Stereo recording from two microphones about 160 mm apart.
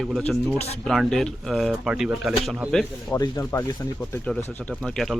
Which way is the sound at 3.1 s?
20° left (ahead or behind).